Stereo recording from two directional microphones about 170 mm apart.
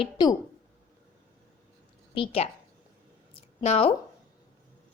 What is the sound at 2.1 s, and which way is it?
Speech, 30° left (ahead or behind).